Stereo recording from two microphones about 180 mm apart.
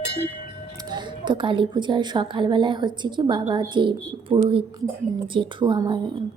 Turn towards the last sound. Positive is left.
turn(degrees=-25)  # may be behind; listen again after turning